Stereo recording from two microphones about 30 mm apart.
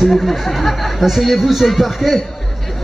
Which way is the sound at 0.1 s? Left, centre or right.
Centre.